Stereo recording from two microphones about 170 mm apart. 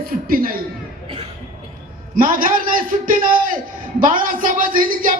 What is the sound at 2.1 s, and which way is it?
A man's voice, 55° right (ahead or behind).